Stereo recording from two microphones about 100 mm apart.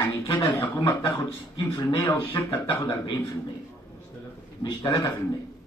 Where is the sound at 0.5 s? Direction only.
25° left (ahead or behind).